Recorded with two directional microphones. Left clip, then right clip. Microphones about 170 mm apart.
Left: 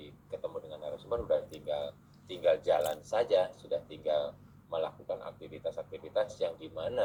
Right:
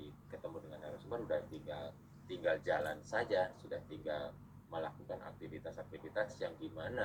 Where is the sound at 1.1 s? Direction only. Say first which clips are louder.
Left 8 dB; 25° left (ahead or behind).